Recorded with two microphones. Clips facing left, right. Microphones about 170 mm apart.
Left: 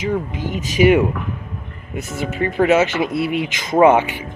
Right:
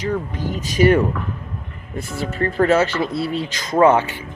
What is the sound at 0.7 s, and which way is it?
Speech, 15° left (ahead or behind).